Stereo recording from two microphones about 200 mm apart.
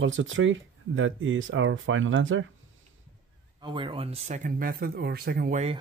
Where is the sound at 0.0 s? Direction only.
75° right (ahead or behind).